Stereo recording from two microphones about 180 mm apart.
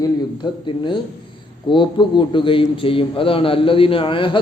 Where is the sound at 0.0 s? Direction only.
25° left (ahead or behind).